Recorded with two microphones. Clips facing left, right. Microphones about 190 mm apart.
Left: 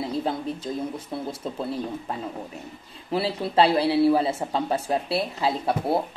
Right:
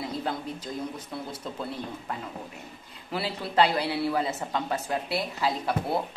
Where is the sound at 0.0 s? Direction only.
25° left (ahead or behind).